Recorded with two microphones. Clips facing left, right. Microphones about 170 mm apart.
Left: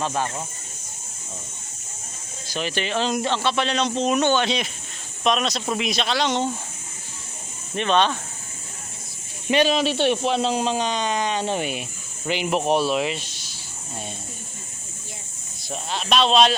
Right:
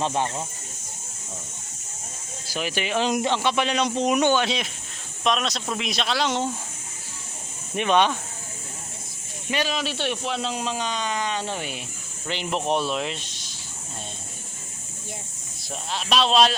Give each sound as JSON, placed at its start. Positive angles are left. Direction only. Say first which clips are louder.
{"t": 0.0, "sound": "speech", "louder": "right 1 dB", "side_deg": -20}
{"t": 2.5, "sound": "speech", "louder": "left 1 dB", "side_deg": -5}
{"t": 7.8, "sound": "speech", "louder": "even", "side_deg": -10}
{"t": 9.5, "sound": "speech", "louder": "left 7 dB", "side_deg": 25}
{"t": 15.7, "sound": "speech", "louder": "left 2 dB", "side_deg": 0}